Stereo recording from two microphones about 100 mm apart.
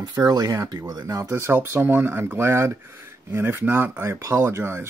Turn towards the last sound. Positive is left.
turn(degrees=-25)  # may be behind; listen again after turning